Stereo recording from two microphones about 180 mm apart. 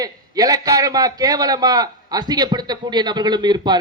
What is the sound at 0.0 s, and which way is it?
A man's voice, 20° right (ahead or behind).